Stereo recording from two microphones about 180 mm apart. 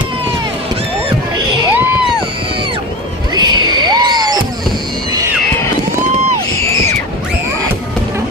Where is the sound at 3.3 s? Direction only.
25° right (ahead or behind).